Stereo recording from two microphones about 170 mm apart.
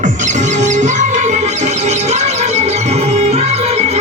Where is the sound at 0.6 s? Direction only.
45° right (ahead or behind).